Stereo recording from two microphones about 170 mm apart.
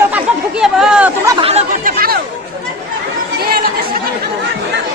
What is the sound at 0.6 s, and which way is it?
Chatter, 5° right (ahead or behind).